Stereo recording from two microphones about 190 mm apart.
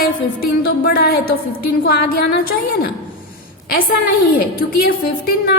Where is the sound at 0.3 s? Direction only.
55° left (ahead or behind).